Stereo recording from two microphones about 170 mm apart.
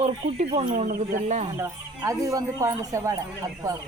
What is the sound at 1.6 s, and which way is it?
Speech, 20° right (ahead or behind).